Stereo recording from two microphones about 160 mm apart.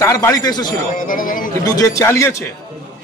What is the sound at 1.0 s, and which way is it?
Speech, 60° left (ahead or behind).